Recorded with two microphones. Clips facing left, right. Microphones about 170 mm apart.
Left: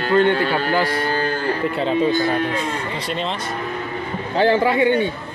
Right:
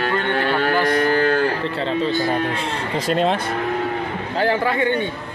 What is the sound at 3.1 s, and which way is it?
Speech, 50° right (ahead or behind).